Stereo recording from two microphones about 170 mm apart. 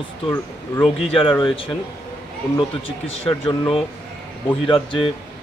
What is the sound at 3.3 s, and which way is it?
A man's voice, 30° left (ahead or behind).